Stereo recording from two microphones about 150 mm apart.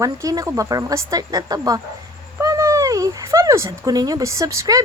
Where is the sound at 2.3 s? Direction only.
20° right (ahead or behind).